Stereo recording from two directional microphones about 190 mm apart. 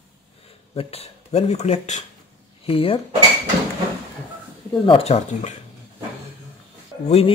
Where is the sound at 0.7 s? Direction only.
30° left (ahead or behind).